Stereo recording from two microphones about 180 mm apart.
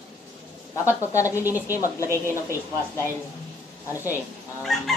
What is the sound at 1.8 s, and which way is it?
A woman's voice, 15° left (ahead or behind).